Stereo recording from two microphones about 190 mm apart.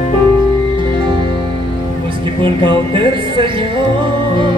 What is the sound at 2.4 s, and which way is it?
Music, 25° right (ahead or behind).